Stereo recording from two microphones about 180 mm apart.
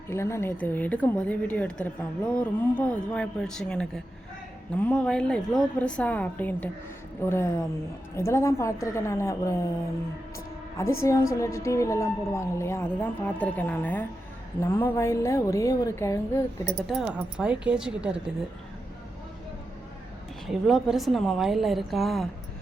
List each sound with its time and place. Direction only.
0.1 s a woman's voice: 15° left (ahead or behind)
10.8 s a woman's voice: 15° left (ahead or behind)
16.9 s a woman's voice: 5° right (ahead or behind)
20.5 s a woman's voice: centre (ahead or behind)